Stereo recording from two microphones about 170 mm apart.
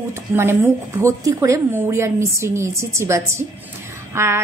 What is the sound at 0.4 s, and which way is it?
A woman's voice, 15° right (ahead or behind).